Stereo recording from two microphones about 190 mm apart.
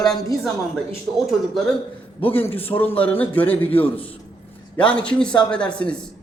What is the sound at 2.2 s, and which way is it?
A man's voice, 10° left (ahead or behind).